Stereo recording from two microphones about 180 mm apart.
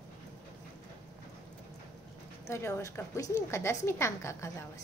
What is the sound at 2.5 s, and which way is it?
A woman's voice, 15° left (ahead or behind).